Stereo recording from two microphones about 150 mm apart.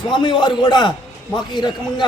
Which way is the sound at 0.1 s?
30° left (ahead or behind).